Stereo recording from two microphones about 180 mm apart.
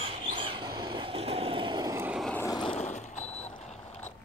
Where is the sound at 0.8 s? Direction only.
30° right (ahead or behind); by 2.2 s 15° right (ahead or behind).